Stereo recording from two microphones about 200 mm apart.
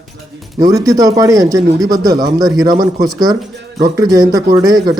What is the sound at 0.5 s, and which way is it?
Speech, 20° right (ahead or behind).